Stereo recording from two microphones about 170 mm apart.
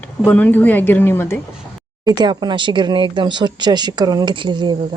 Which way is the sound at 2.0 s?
25° right (ahead or behind).